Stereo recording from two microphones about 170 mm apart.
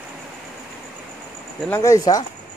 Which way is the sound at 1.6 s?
15° left (ahead or behind).